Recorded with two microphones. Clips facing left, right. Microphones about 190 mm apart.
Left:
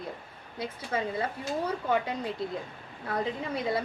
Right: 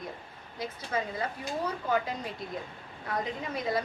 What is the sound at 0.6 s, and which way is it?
A woman's voice, 30° left (ahead or behind).